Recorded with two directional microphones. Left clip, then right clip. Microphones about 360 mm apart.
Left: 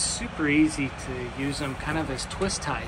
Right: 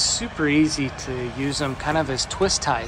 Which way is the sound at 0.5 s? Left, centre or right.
Right.